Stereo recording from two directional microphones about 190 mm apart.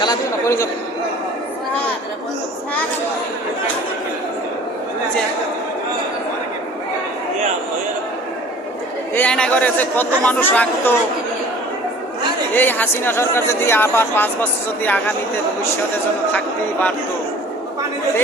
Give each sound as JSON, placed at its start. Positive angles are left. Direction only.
{"t": 0.0, "sound": "a man's voice", "side_deg": 20}
{"t": 9.1, "sound": "speech", "side_deg": 5}
{"t": 12.5, "sound": "speech", "side_deg": 10}